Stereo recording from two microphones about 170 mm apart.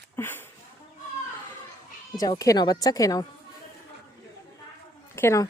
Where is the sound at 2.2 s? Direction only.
20° left (ahead or behind).